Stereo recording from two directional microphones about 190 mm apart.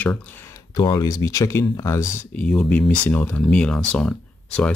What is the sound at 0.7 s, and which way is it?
Speech, 20° left (ahead or behind).